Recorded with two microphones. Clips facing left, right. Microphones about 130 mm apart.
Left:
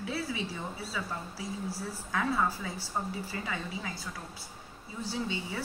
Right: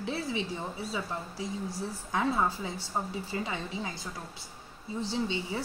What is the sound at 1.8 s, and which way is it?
Speech, 20° right (ahead or behind).